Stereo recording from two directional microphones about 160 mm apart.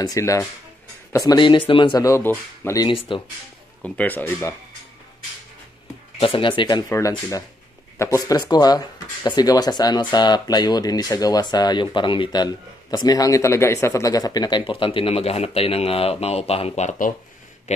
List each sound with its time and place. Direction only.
0.0 s speech: 20° left (ahead or behind)
3.1 s speech: 35° left (ahead or behind)
3.8 s speech: 10° left (ahead or behind)
6.1 s speech: 35° left (ahead or behind)
6.9 s speech: 20° left (ahead or behind); by 17.1 s 45° left (ahead or behind)
17.7 s a sound: 45° left (ahead or behind)